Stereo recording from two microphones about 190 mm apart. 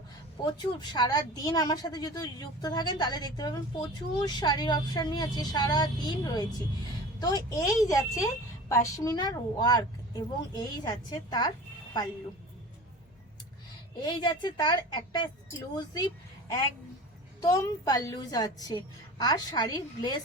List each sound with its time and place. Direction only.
0.6 s a woman's voice: 20° left (ahead or behind)
14.0 s a woman's voice: 25° left (ahead or behind)